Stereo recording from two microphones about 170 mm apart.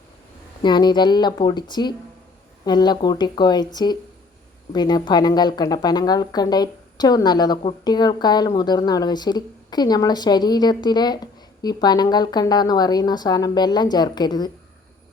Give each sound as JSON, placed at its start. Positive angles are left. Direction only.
{"t": 0.6, "sound": "speech", "side_deg": 25}